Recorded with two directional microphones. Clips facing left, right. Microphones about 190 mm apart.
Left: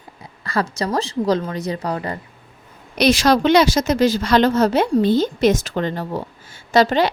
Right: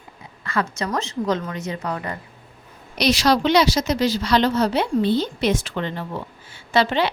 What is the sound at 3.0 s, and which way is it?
A woman's voice, 50° left (ahead or behind).